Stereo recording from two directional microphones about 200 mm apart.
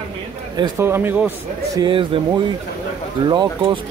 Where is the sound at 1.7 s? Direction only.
25° right (ahead or behind).